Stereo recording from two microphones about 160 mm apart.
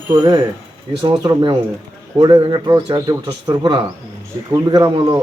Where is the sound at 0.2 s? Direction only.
30° right (ahead or behind).